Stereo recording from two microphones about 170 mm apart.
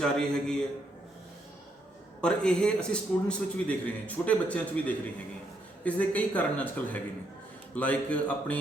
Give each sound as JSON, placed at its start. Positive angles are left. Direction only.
{"t": 0.0, "sound": "a man's voice", "side_deg": 5}
{"t": 2.2, "sound": "a man's voice", "side_deg": 5}